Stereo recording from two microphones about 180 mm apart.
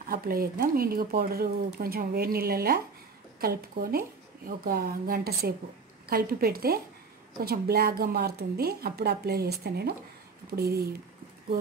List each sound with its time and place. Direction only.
0.1 s speech: 55° right (ahead or behind)